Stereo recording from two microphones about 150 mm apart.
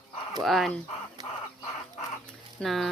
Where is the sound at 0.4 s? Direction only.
Centre (ahead or behind).